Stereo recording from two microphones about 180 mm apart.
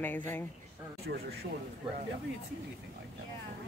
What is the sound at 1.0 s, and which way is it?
Speech, 60° right (ahead or behind).